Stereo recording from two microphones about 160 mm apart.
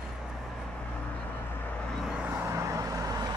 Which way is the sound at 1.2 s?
10° left (ahead or behind).